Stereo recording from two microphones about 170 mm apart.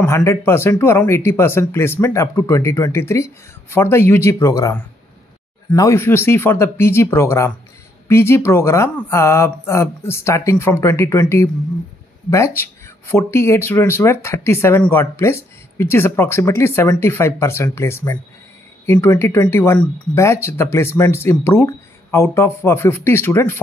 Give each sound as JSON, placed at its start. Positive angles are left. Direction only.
{"t": 0.0, "sound": "speech", "side_deg": 15}